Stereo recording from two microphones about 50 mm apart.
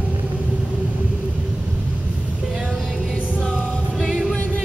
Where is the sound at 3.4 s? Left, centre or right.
Centre.